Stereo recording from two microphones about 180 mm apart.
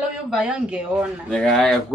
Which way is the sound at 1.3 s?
5° left (ahead or behind).